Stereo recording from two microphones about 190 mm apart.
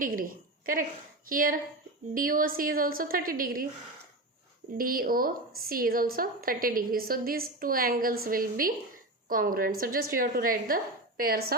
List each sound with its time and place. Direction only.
0.0 s a woman's voice: 45° right (ahead or behind)
4.8 s a woman's voice: 50° right (ahead or behind)